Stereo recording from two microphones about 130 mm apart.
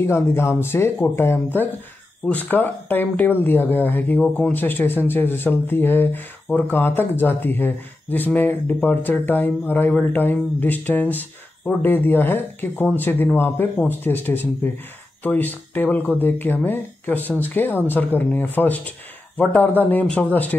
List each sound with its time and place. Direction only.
0.0 s speech: 20° left (ahead or behind)